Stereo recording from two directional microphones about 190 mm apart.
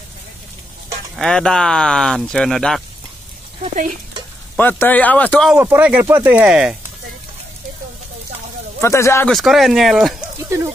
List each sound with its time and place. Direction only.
1.1 s speech: 5° left (ahead or behind)
3.6 s speech: 40° right (ahead or behind)
4.6 s speech: 10° left (ahead or behind)
5.5 s speech: 10° right (ahead or behind)
8.8 s speech: 15° left (ahead or behind)
9.3 s speech: centre (ahead or behind)
10.4 s speech: 15° right (ahead or behind)